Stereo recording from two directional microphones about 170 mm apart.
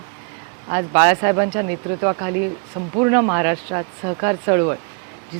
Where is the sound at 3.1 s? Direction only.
15° right (ahead or behind).